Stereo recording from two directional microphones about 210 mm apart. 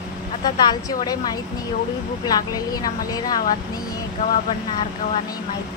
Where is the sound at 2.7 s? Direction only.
20° left (ahead or behind).